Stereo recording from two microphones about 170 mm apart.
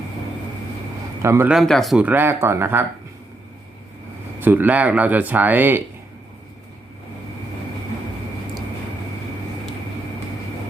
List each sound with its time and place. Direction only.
1.2 s speech: 15° right (ahead or behind)
1.5 s speech: centre (ahead or behind)
4.4 s speech: 10° right (ahead or behind)